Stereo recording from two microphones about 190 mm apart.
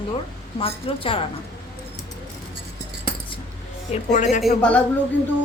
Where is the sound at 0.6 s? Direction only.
30° left (ahead or behind).